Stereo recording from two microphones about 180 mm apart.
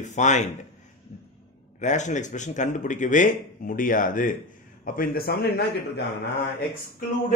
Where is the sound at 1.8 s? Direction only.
40° left (ahead or behind); by 5.5 s 60° left (ahead or behind).